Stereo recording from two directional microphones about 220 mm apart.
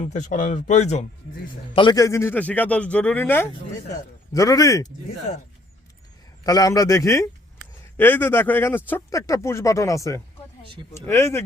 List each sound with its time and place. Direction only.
0.0 s speech: 35° left (ahead or behind)
1.7 s speech: 20° left (ahead or behind)
6.4 s speech: 15° left (ahead or behind)